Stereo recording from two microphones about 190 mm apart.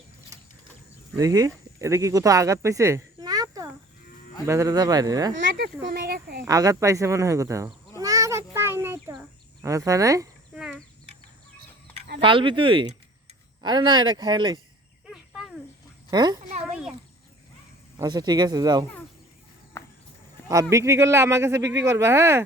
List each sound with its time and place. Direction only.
1.1 s speech: 20° right (ahead or behind)
3.2 s a sound: 20° right (ahead or behind)
4.4 s speech: 15° right (ahead or behind)
5.3 s speech: 70° right (ahead or behind)
5.8 s speech: 60° right (ahead or behind)
6.4 s cat: 20° right (ahead or behind)
10.5 s chicken: 5° right (ahead or behind)
12.2 s speech: 25° right (ahead or behind)
15.0 s cricket: centre (ahead or behind)
16.0 s speech: 20° right (ahead or behind)
17.9 s speech: 20° right (ahead or behind)
19.8 s horse: 15° left (ahead or behind)
20.5 s speech: 15° right (ahead or behind)